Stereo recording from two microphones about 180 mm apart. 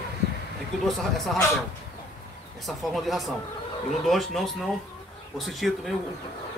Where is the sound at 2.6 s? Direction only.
Centre (ahead or behind).